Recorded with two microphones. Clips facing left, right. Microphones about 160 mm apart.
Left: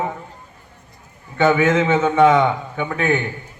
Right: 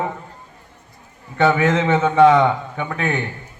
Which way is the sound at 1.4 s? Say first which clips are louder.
Left 1 dB; 35° right (ahead or behind).